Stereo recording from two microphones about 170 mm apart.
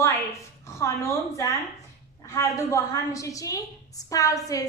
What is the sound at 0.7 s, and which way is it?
A woman's voice, 15° left (ahead or behind).